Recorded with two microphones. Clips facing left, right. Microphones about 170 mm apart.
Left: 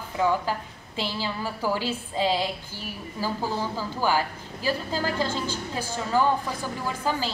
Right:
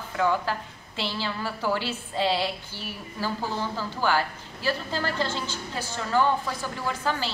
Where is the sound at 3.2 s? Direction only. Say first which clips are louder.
Left 1 dB; 10° left (ahead or behind).